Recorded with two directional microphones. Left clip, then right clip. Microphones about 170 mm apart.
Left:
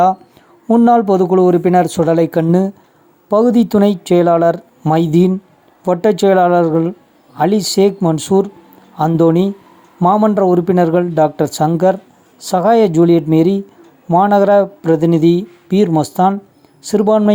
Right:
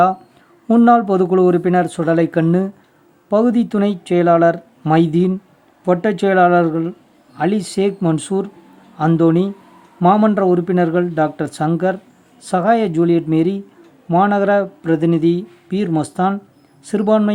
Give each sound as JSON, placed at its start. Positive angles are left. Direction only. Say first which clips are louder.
{"t": 0.7, "sound": "speech", "louder": "left 2 dB", "side_deg": 15}